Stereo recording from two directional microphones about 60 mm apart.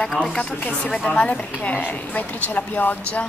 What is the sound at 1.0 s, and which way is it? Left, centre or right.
A woman's voice, left.